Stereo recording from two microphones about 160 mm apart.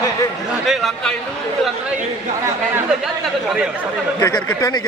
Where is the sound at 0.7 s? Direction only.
Centre (ahead or behind).